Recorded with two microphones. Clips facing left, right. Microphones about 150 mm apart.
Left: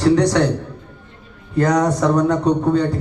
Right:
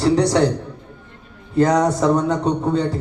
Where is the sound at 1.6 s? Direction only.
25° right (ahead or behind).